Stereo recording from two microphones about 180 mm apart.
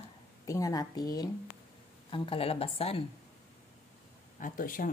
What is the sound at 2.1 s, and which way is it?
Speech, 30° left (ahead or behind).